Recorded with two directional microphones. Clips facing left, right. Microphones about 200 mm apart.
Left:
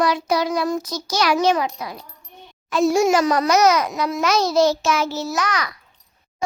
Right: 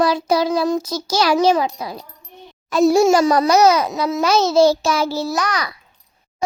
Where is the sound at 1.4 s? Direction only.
30° right (ahead or behind).